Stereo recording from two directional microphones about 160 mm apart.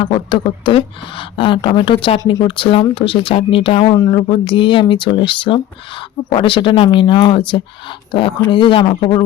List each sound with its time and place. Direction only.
0.0 s speech: 30° left (ahead or behind)